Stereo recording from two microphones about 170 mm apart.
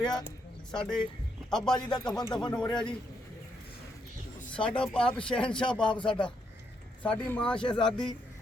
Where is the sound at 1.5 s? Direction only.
5° left (ahead or behind).